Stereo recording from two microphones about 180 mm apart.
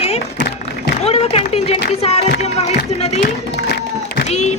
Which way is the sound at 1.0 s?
35° left (ahead or behind).